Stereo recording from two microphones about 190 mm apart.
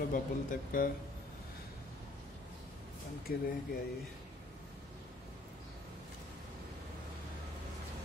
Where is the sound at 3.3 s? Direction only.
50° left (ahead or behind).